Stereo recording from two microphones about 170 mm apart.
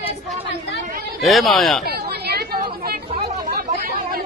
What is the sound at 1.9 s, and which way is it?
Chatter, 70° right (ahead or behind).